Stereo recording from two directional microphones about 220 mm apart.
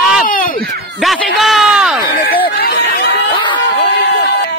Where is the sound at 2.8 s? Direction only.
55° left (ahead or behind).